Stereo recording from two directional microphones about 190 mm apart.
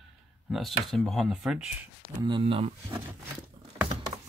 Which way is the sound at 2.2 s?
25° right (ahead or behind).